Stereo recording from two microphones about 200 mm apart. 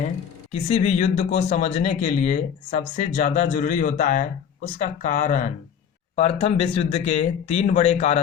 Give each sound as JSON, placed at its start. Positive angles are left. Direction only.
{"t": 0.5, "sound": "speech", "side_deg": 35}